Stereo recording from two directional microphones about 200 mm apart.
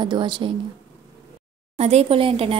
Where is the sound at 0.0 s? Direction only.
25° right (ahead or behind).